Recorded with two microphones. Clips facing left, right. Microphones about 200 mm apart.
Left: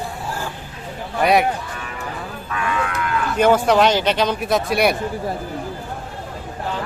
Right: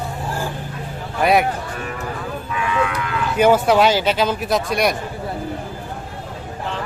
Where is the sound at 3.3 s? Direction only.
5° right (ahead or behind).